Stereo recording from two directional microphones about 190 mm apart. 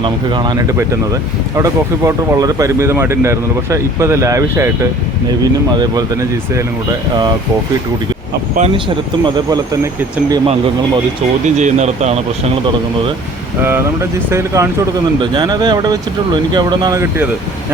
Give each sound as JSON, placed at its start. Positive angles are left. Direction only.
{"t": 0.0, "sound": "speech", "side_deg": -25}
{"t": 8.5, "sound": "speech", "side_deg": -35}
{"t": 9.2, "sound": "speech", "side_deg": -20}
{"t": 11.4, "sound": "speech", "side_deg": -40}
{"t": 13.6, "sound": "speech", "side_deg": -10}